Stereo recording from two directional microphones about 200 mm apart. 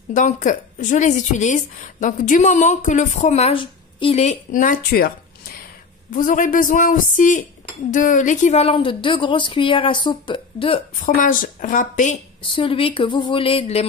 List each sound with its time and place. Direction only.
0.1 s a woman's voice: 40° left (ahead or behind)
11.0 s a woman's voice: 45° left (ahead or behind)
12.5 s a woman's voice: 25° left (ahead or behind)